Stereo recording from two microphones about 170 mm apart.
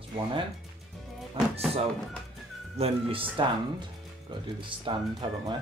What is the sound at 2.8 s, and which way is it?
Speech, 30° right (ahead or behind).